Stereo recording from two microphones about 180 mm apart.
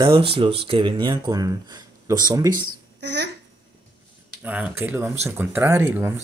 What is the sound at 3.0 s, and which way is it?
Speech, 70° right (ahead or behind).